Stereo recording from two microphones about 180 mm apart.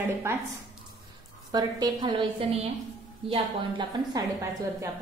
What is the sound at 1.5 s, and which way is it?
Speech, 20° right (ahead or behind).